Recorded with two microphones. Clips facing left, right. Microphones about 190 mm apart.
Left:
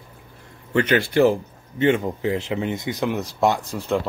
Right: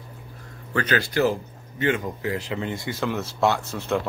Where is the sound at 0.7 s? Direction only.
25° left (ahead or behind).